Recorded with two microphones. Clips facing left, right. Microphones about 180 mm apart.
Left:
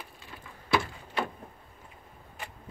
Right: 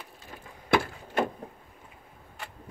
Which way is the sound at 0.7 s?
50° right (ahead or behind).